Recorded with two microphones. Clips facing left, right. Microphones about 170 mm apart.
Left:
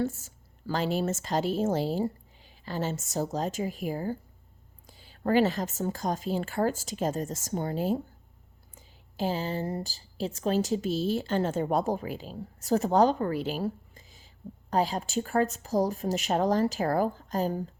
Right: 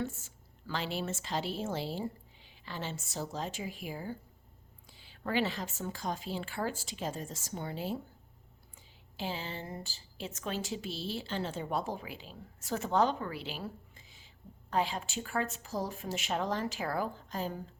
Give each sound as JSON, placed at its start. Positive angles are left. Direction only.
{"t": 0.0, "sound": "a woman's voice", "side_deg": 40}